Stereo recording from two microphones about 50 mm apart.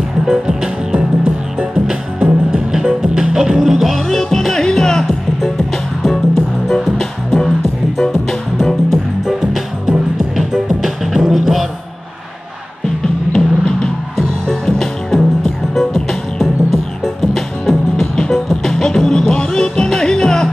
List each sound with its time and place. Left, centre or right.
0.3 s music: centre
6.0 s music: centre
9.2 s music: centre
13.0 s music: centre